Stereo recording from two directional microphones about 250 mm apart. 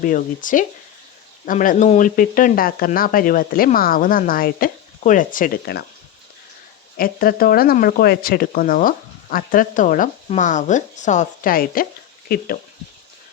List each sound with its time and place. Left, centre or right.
0.0 s speech: left
6.9 s speech: left